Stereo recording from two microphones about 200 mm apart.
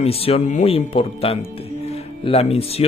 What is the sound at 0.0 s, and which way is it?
Speech, 30° left (ahead or behind).